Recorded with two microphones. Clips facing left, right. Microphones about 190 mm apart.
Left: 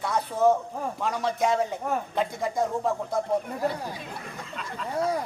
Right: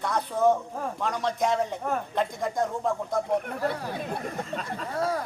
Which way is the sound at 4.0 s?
45° right (ahead or behind).